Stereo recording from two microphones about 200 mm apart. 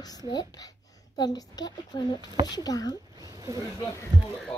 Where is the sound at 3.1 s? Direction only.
15° right (ahead or behind).